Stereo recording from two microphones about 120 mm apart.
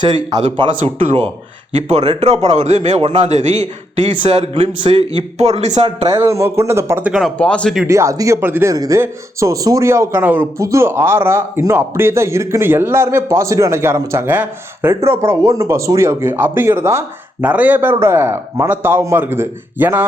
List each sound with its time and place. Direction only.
0.0 s speech: 40° right (ahead or behind)
1.0 s speech: 55° right (ahead or behind)
2.5 s a man's voice: 70° right (ahead or behind)
4.1 s speech: 45° right (ahead or behind)
5.4 s a man's voice: 65° right (ahead or behind)
6.1 s speech: 25° right (ahead or behind)
7.0 s speech: centre (ahead or behind)
7.3 s speech: 10° left (ahead or behind)
7.9 s speech: 25° right (ahead or behind)
8.7 s a man's voice: 30° right (ahead or behind)